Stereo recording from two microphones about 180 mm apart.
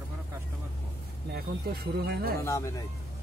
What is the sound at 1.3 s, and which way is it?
Speech, 60° right (ahead or behind).